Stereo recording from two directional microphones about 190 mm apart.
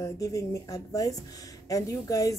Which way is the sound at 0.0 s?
15° left (ahead or behind).